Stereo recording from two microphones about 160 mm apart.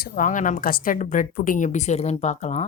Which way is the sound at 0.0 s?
55° left (ahead or behind).